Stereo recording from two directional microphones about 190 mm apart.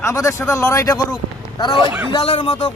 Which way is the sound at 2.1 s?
25° left (ahead or behind).